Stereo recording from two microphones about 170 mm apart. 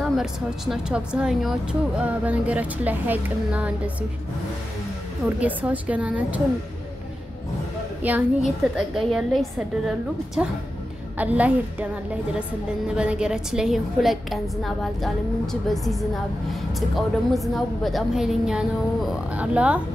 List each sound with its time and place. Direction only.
0.0 s a woman's voice: centre (ahead or behind)
5.2 s a woman's voice: 10° right (ahead or behind)
8.0 s a woman's voice: 5° right (ahead or behind)